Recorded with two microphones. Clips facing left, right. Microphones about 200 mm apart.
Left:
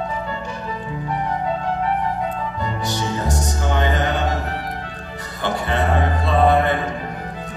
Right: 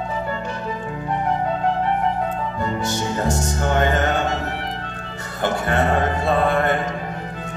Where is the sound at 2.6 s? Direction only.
50° right (ahead or behind).